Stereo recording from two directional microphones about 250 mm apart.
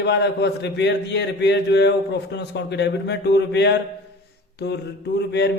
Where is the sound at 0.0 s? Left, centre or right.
Left.